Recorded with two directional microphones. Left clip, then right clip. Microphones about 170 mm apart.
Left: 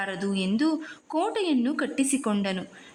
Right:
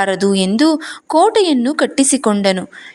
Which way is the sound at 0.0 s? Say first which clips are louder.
Right 15 dB; 45° right (ahead or behind).